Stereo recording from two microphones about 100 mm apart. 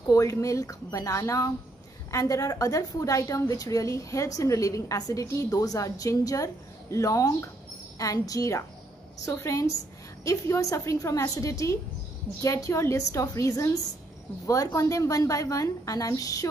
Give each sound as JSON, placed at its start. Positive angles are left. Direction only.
{"t": 0.0, "sound": "a woman's voice", "side_deg": 35}